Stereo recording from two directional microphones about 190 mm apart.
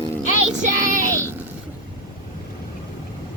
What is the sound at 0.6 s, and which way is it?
Child singing, 45° right (ahead or behind).